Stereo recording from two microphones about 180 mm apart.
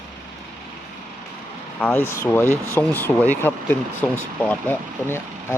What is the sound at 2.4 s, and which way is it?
Speech, 15° right (ahead or behind).